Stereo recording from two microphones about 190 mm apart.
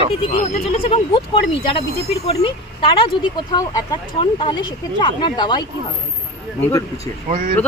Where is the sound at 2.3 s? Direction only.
30° left (ahead or behind).